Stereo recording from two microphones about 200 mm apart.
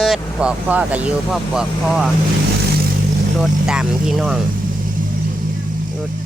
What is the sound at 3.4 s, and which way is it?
Speech, 5° right (ahead or behind).